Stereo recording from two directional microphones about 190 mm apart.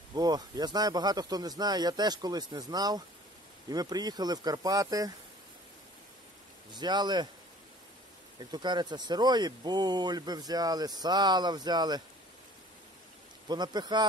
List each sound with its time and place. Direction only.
0.1 s speech: 20° right (ahead or behind)
6.7 s speech: 20° right (ahead or behind)
8.4 s speech: 25° right (ahead or behind)
13.5 s speech: 20° right (ahead or behind)